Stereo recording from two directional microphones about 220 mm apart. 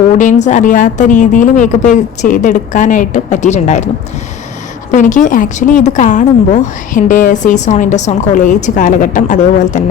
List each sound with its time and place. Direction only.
0.2 s a woman's voice: 35° left (ahead or behind)
4.9 s a woman's voice: 35° left (ahead or behind)